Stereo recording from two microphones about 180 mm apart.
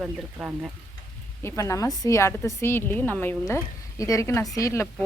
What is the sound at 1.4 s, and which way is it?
A woman's voice, 15° left (ahead or behind).